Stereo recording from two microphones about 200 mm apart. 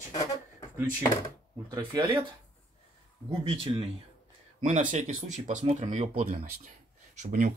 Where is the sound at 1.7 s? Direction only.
20° right (ahead or behind).